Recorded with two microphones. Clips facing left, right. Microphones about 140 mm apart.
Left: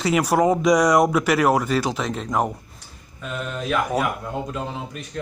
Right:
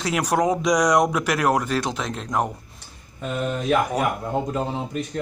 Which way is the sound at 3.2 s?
35° right (ahead or behind).